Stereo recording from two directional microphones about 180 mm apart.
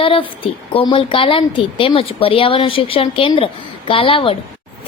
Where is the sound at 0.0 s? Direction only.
30° left (ahead or behind).